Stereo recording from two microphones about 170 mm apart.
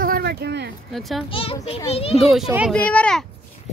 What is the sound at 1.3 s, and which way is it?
Speech, 35° left (ahead or behind).